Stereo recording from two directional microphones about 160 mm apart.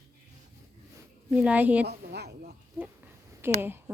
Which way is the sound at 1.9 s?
90° right.